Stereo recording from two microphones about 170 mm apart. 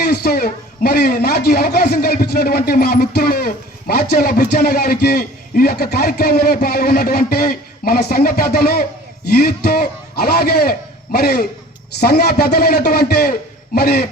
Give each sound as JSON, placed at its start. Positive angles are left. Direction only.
{"t": 0.0, "sound": "a man's voice", "side_deg": 70}